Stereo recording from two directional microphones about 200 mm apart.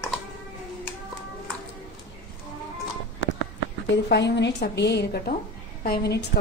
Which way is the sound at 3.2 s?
65° left (ahead or behind).